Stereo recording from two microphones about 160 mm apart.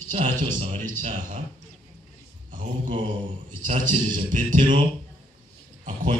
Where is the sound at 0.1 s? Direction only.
55° right (ahead or behind).